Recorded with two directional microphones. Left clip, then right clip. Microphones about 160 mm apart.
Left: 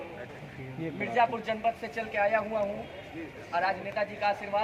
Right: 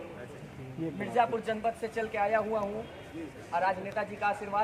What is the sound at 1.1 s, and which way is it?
Speech, 40° right (ahead or behind).